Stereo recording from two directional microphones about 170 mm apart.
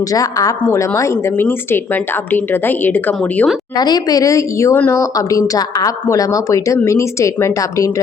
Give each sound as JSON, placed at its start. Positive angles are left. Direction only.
{"t": 0.0, "sound": "a woman's voice", "side_deg": 20}
{"t": 3.8, "sound": "a woman's voice", "side_deg": 25}